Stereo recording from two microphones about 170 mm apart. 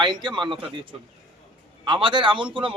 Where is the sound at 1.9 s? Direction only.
30° right (ahead or behind).